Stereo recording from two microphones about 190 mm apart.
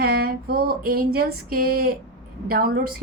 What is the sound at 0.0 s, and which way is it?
A woman's voice, 55° right (ahead or behind).